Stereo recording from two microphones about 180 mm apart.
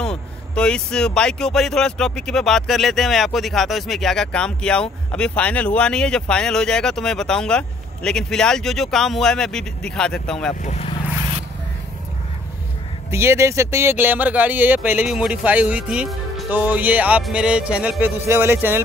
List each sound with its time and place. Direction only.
0.6 s speech: 5° left (ahead or behind)
10.6 s speech: 40° left (ahead or behind)
13.1 s speech: 15° right (ahead or behind)